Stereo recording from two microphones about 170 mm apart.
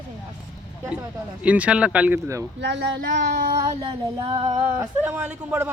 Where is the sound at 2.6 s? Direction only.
90° right.